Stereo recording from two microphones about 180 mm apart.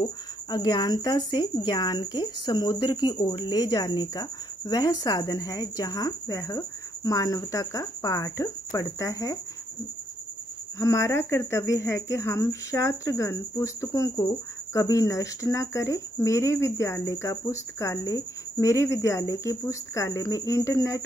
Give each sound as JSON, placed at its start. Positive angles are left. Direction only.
{"t": 0.0, "sound": "speech", "side_deg": 25}
{"t": 10.8, "sound": "speech", "side_deg": 15}